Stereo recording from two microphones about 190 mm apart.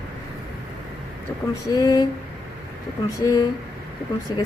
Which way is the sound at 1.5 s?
20° left (ahead or behind).